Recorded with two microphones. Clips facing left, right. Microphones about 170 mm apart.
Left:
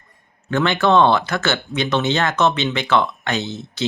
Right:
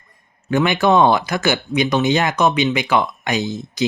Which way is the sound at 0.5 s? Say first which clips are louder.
Right 1 dB; 15° right (ahead or behind).